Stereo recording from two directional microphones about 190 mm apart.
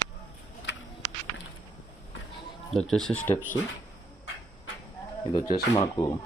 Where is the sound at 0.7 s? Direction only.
70° left (ahead or behind).